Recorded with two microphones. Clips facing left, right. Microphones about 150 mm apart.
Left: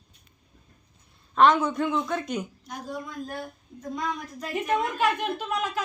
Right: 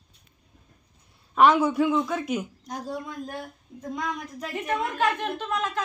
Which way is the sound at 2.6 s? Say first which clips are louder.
Right 3 dB; 40° right (ahead or behind).